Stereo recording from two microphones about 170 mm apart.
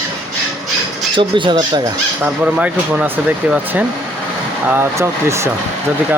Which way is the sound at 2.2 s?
10° right (ahead or behind).